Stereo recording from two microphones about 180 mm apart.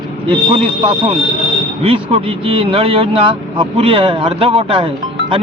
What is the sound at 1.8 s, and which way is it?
Speech, 30° right (ahead or behind).